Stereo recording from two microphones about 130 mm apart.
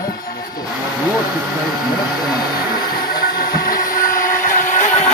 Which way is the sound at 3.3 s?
90° left.